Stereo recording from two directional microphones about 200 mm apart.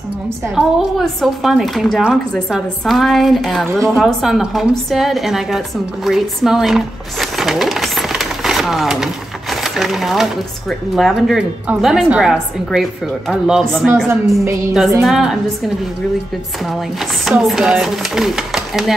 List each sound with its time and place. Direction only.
0.6 s speech: centre (ahead or behind)
17.2 s speech: centre (ahead or behind)